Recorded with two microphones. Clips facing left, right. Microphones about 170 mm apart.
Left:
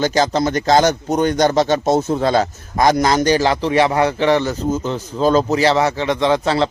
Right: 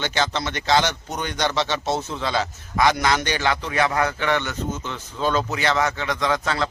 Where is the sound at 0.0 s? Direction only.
40° left (ahead or behind).